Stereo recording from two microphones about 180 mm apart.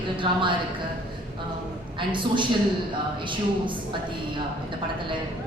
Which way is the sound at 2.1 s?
25° right (ahead or behind).